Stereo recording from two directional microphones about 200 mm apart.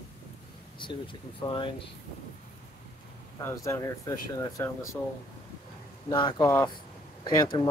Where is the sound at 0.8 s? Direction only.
25° left (ahead or behind).